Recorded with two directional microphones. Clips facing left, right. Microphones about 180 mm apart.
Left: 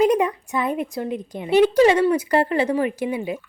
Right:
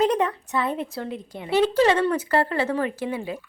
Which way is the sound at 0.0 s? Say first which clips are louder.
Left 3 dB; 10° left (ahead or behind).